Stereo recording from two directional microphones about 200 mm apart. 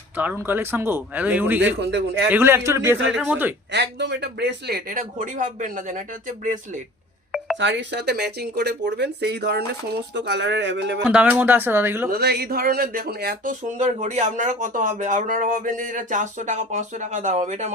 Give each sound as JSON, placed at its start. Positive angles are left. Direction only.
{"t": 0.2, "sound": "speech", "side_deg": -10}
{"t": 1.8, "sound": "speech", "side_deg": -60}
{"t": 2.3, "sound": "speech", "side_deg": -10}
{"t": 3.7, "sound": "speech", "side_deg": -60}
{"t": 7.6, "sound": "speech", "side_deg": -65}
{"t": 11.0, "sound": "speech", "side_deg": -5}
{"t": 12.1, "sound": "speech", "side_deg": -55}